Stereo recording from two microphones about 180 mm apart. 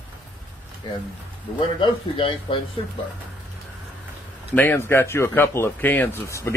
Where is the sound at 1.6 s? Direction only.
25° left (ahead or behind).